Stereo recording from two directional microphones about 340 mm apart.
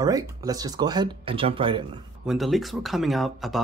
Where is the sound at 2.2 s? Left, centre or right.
Centre.